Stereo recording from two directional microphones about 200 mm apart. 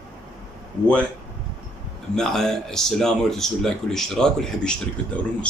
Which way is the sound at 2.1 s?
Centre (ahead or behind).